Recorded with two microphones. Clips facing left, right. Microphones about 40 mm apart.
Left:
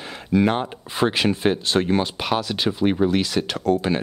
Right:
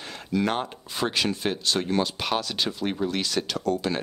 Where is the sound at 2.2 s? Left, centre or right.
Centre.